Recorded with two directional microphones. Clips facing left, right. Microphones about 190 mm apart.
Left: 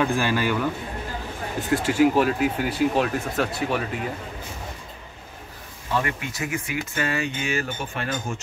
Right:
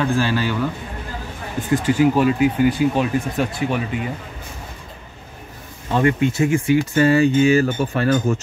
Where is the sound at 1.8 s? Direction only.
5° left (ahead or behind).